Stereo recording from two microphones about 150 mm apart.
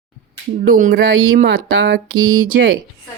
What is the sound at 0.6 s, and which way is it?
Speech, 70° right (ahead or behind).